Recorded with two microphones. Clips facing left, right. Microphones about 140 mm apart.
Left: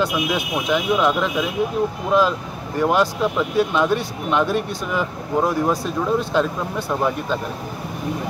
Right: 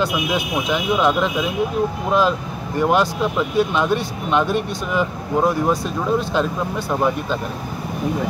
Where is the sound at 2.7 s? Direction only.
Centre (ahead or behind).